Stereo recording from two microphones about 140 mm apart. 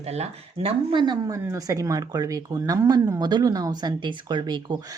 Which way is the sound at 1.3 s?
25° right (ahead or behind).